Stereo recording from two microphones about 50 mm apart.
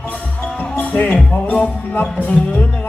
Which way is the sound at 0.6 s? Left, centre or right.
Left.